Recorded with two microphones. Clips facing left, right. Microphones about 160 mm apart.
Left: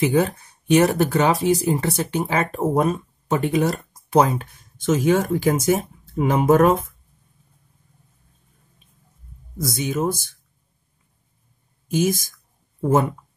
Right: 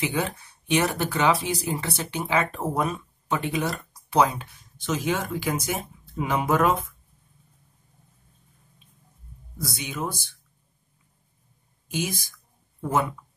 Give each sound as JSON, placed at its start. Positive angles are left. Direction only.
{"t": 0.0, "sound": "speech", "side_deg": 45}
{"t": 9.6, "sound": "speech", "side_deg": 45}
{"t": 11.9, "sound": "speech", "side_deg": 45}